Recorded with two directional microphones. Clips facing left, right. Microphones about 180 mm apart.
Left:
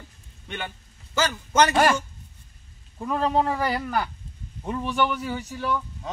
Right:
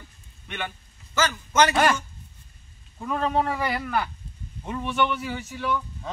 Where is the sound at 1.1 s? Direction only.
30° left (ahead or behind).